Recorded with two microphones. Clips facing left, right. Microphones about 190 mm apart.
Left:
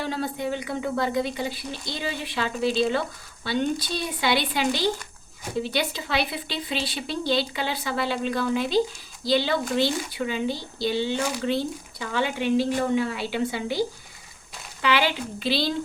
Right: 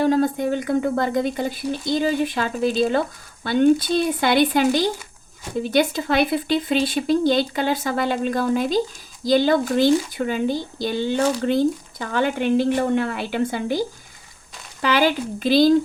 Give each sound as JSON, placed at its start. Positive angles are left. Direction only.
{"t": 0.0, "sound": "speech", "side_deg": -45}